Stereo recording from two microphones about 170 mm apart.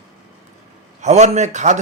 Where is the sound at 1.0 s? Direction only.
45° right (ahead or behind).